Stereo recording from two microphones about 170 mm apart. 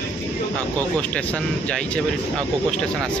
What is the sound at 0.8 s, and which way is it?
Speech, 10° left (ahead or behind).